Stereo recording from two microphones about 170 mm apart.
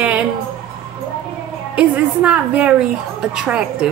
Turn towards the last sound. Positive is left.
turn(degrees=-5)  # may be behind; listen again after turning